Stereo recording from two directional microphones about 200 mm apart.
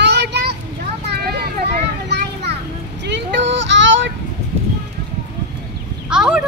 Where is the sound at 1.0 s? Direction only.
55° right (ahead or behind).